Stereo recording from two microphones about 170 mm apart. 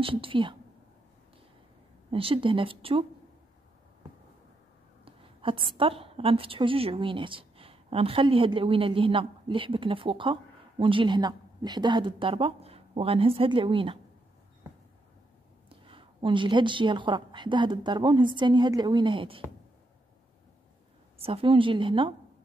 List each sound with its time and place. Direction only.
0.0 s speech: 30° right (ahead or behind)
2.0 s speech: 30° right (ahead or behind)
5.0 s a woman's voice: 30° right (ahead or behind)
15.7 s a woman's voice: 30° right (ahead or behind)
21.2 s speech: 35° right (ahead or behind)